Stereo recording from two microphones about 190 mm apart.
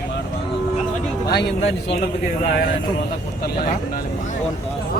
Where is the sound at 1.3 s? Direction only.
60° left (ahead or behind).